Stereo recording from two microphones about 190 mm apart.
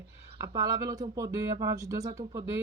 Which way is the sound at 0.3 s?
15° right (ahead or behind).